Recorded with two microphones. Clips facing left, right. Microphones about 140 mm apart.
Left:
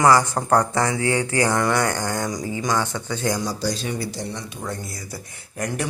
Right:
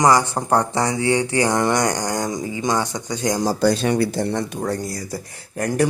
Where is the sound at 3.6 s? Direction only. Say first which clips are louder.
Right 8 dB; 60° right (ahead or behind).